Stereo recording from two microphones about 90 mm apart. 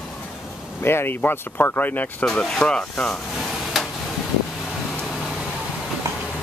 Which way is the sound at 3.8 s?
Centre (ahead or behind).